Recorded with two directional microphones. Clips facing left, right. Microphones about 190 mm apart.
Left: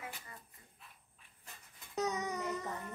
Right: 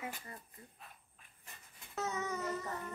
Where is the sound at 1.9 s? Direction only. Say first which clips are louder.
Left 2 dB; 15° left (ahead or behind).